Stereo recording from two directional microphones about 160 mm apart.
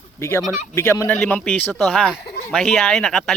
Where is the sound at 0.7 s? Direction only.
15° left (ahead or behind).